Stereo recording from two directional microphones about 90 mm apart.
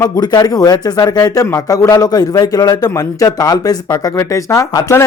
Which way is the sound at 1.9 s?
45° left (ahead or behind).